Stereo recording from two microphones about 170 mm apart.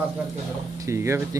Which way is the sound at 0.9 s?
15° right (ahead or behind).